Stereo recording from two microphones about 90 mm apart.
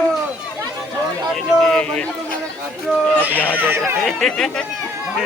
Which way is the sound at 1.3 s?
5° left (ahead or behind).